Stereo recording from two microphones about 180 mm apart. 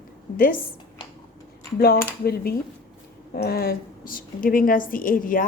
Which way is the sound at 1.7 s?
55° left (ahead or behind).